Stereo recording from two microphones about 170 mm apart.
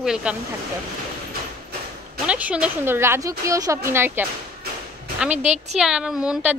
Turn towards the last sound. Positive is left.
turn(degrees=-5)  # may be behind; listen again after turning